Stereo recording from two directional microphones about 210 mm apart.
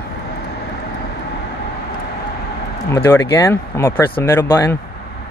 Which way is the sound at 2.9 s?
15° left (ahead or behind).